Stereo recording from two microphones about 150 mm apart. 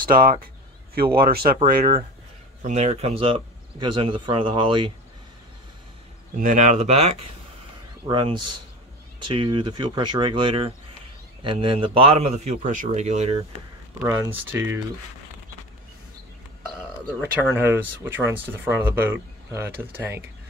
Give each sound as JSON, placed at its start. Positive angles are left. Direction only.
{"t": 0.0, "sound": "speech", "side_deg": -75}
{"t": 0.9, "sound": "speech", "side_deg": -90}
{"t": 2.6, "sound": "speech", "side_deg": -50}
{"t": 6.3, "sound": "a man's voice", "side_deg": -60}
{"t": 8.1, "sound": "a man's voice", "side_deg": -35}
{"t": 13.9, "sound": "speech", "side_deg": -15}
{"t": 17.4, "sound": "speech", "side_deg": -15}